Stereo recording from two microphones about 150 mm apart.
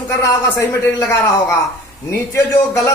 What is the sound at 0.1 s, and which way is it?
A man's voice, 20° left (ahead or behind).